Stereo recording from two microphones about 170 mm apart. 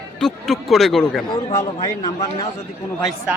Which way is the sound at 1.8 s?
25° left (ahead or behind).